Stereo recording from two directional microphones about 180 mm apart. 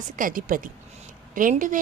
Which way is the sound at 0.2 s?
50° right (ahead or behind).